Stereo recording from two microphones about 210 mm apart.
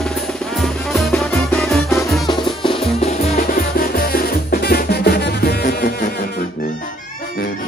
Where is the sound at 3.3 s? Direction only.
45° left (ahead or behind).